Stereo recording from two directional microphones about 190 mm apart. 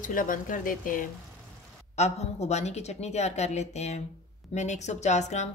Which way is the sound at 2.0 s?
35° left (ahead or behind).